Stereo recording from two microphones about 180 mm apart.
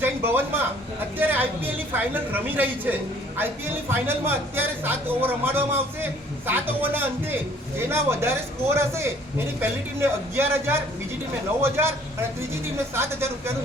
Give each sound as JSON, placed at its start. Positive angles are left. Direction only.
{"t": 0.0, "sound": "a man's voice", "side_deg": -10}